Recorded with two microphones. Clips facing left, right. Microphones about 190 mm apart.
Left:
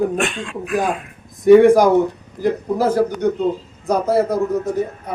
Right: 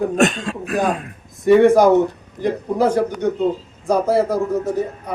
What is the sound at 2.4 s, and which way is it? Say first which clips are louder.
Speech: even; 5° left (ahead or behind).